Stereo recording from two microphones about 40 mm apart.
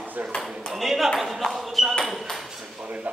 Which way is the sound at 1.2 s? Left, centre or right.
Centre.